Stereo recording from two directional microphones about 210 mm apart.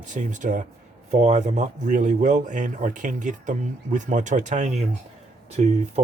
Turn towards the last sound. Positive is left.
turn(degrees=-30)  # may be behind; listen again after turning